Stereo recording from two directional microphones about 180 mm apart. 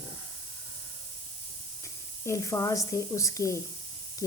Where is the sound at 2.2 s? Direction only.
15° left (ahead or behind).